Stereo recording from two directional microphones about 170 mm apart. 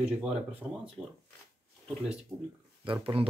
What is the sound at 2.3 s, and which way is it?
Speech, 10° right (ahead or behind).